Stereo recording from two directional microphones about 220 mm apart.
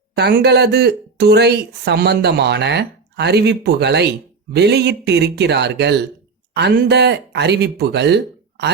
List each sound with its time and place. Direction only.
0.2 s speech: 50° right (ahead or behind)